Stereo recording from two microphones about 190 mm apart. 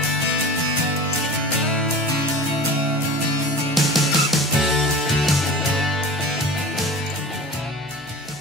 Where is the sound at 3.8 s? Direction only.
Centre (ahead or behind).